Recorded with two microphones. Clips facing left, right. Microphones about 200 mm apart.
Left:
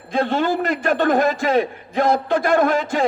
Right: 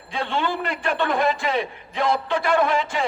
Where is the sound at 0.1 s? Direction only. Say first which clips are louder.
Left 6 dB; 45° left (ahead or behind).